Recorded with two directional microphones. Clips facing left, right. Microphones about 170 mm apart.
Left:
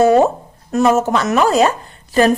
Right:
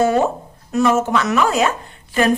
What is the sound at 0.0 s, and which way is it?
A woman's voice, 40° left (ahead or behind).